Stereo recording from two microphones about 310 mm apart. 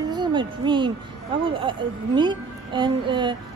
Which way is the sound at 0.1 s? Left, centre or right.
Centre.